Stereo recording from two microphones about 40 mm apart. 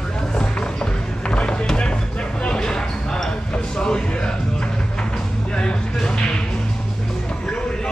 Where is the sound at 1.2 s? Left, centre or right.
Left.